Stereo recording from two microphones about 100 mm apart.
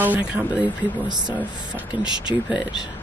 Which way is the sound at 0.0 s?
15° right (ahead or behind).